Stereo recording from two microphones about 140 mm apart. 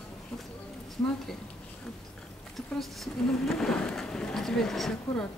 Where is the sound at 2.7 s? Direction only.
Centre (ahead or behind).